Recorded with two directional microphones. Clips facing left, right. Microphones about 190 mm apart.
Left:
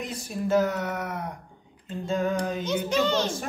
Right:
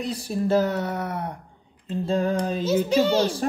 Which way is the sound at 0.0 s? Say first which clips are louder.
Right 5 dB; 35° right (ahead or behind).